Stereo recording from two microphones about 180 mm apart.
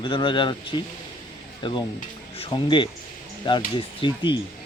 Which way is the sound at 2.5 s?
25° left (ahead or behind).